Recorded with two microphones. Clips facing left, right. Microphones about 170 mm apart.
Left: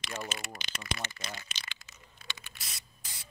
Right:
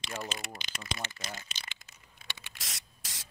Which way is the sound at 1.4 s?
50° right (ahead or behind).